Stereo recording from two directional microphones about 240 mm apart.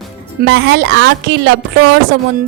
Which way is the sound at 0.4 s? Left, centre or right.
Right.